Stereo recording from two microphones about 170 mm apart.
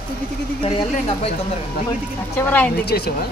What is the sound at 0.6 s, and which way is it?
Speech, 35° left (ahead or behind).